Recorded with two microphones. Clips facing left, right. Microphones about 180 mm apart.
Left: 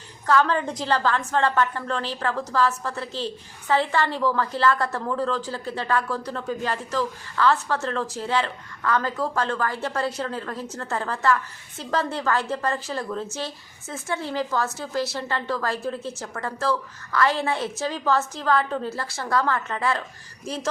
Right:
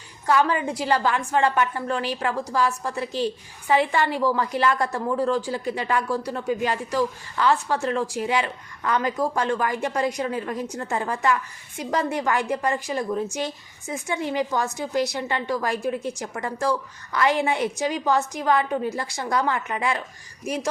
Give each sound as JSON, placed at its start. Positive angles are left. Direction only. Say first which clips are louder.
{"t": 0.3, "sound": "a woman's voice", "louder": "even", "side_deg": -10}